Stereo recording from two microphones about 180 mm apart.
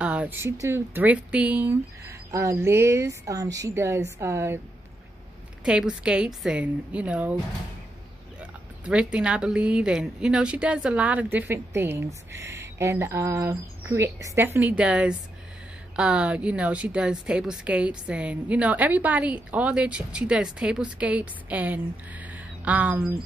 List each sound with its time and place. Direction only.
0.0 s a woman's voice: 5° right (ahead or behind)
5.7 s a woman's voice: 5° right (ahead or behind)
8.4 s a woman's voice: 5° right (ahead or behind)